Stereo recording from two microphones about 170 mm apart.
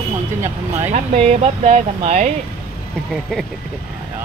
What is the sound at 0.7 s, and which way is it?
Speech, 45° right (ahead or behind).